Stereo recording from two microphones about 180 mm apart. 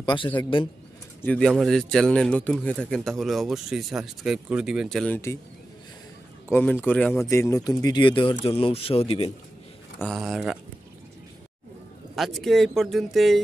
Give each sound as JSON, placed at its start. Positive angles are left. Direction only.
{"t": 0.0, "sound": "a man's voice", "side_deg": 25}
{"t": 1.2, "sound": "speech", "side_deg": 5}
{"t": 6.5, "sound": "speech", "side_deg": 10}
{"t": 9.9, "sound": "speech", "side_deg": 0}
{"t": 12.2, "sound": "speech", "side_deg": 0}